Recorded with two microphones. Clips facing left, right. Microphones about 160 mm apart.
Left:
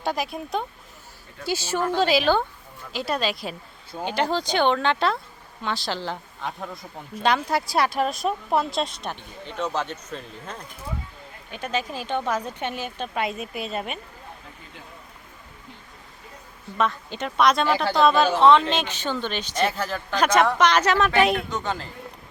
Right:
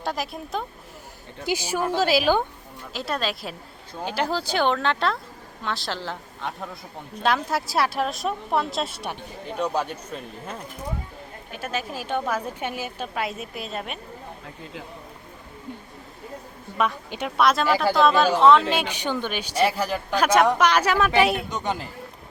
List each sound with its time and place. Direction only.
0.0 s a woman's voice: centre (ahead or behind)
1.5 s a woman's voice: 15° right (ahead or behind)
16.7 s a woman's voice: 10° right (ahead or behind)
21.3 s a woman's voice: 20° right (ahead or behind)